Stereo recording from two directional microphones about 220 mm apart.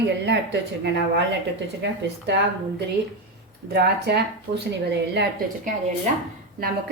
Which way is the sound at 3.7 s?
50° right (ahead or behind).